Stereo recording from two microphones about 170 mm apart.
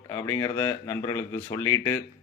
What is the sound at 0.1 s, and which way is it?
A man's voice, 20° left (ahead or behind).